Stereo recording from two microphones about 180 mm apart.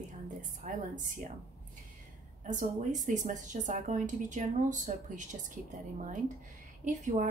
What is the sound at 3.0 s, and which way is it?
A woman's voice, 45° right (ahead or behind).